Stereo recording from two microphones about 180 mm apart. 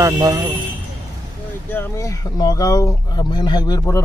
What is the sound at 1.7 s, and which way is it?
Speech, 15° left (ahead or behind).